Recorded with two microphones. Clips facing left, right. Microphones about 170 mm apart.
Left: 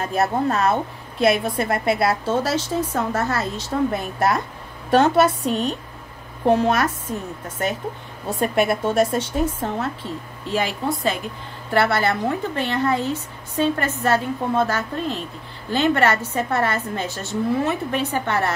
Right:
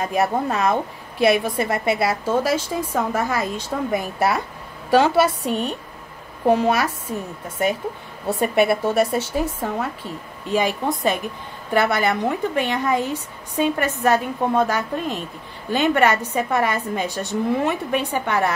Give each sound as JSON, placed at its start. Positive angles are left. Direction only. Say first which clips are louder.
{"t": 0.0, "sound": "a woman's voice", "louder": "even", "side_deg": -15}
{"t": 8.3, "sound": "a woman's voice", "louder": "right 2 dB", "side_deg": -5}